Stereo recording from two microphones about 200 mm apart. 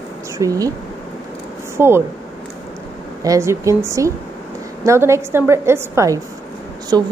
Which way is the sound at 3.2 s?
15° right (ahead or behind).